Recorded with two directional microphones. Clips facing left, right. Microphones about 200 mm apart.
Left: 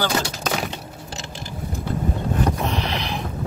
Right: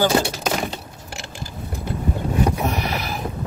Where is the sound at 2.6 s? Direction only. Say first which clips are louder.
Right 1 dB; 10° right (ahead or behind).